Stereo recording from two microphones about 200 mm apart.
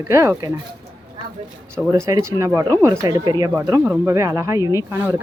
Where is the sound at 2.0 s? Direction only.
20° right (ahead or behind).